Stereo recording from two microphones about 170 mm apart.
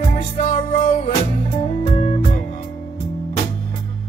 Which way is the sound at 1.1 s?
35° left (ahead or behind).